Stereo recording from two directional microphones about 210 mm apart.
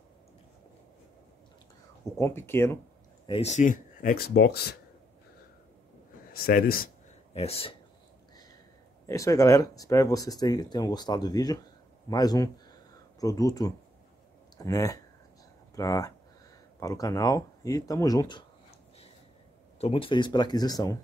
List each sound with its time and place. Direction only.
2.1 s speech: 10° left (ahead or behind)
3.3 s speech: 30° left (ahead or behind); by 4.7 s 50° left (ahead or behind)
6.3 s speech: 45° left (ahead or behind)
7.3 s speech: 30° left (ahead or behind)
9.0 s speech: 15° left (ahead or behind)
19.8 s speech: 25° left (ahead or behind)